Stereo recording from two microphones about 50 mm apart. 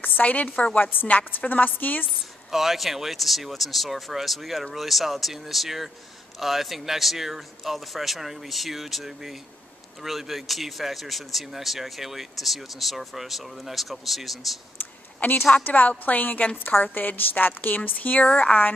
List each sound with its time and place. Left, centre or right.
0.0 s a woman's voice: left
2.1 s speech: centre
15.1 s a woman's voice: left
18.2 s speech: left